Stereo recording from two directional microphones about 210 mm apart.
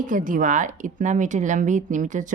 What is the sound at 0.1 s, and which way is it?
Speech, 40° right (ahead or behind).